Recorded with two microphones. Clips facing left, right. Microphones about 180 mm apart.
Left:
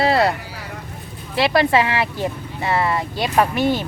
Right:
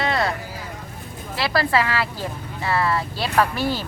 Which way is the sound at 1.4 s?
25° left (ahead or behind).